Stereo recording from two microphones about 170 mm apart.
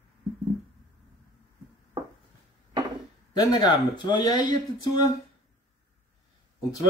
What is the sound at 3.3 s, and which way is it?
Speech, 25° left (ahead or behind).